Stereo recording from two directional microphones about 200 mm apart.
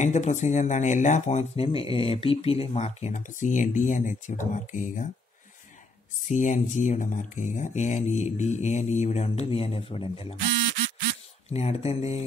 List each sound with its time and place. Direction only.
0.0 s speech: 35° left (ahead or behind)
6.2 s speech: 35° left (ahead or behind)
11.5 s speech: 30° left (ahead or behind)